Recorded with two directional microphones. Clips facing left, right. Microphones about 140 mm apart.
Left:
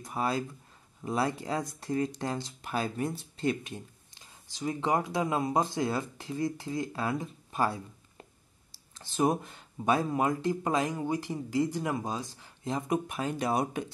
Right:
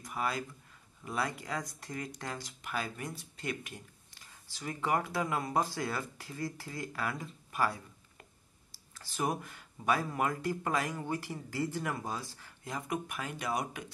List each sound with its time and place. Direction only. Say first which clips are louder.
0.0 s speech: left 5 dB; 30° left (ahead or behind)